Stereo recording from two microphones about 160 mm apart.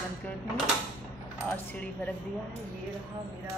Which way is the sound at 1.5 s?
10° left (ahead or behind).